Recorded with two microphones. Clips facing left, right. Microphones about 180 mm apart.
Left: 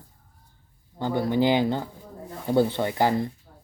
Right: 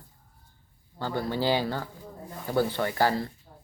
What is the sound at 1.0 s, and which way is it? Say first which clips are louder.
Speech: left 6 dB; 20° left (ahead or behind).